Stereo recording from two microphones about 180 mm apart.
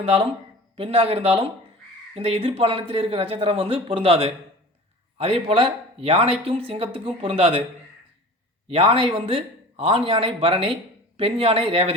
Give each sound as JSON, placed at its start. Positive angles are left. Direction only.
{"t": 0.0, "sound": "speech", "side_deg": -35}
{"t": 8.6, "sound": "speech", "side_deg": -30}